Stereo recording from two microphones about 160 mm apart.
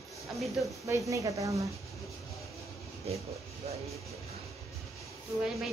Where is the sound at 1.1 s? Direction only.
20° right (ahead or behind).